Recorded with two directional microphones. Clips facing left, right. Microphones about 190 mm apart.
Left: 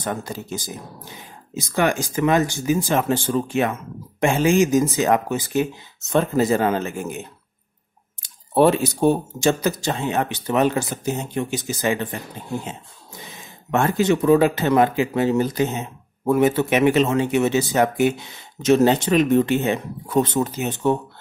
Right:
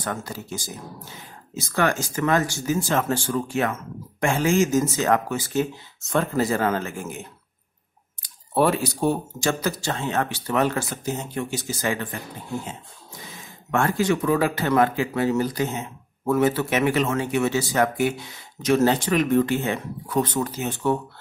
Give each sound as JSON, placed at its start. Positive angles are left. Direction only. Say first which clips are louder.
{"t": 0.0, "sound": "speech", "louder": "left 3 dB", "side_deg": 20}